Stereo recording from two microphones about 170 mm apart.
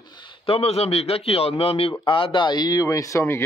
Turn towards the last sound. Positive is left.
turn(degrees=15)  # may be behind; listen again after turning